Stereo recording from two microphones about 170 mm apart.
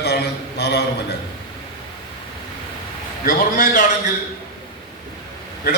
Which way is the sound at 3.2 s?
50° left (ahead or behind).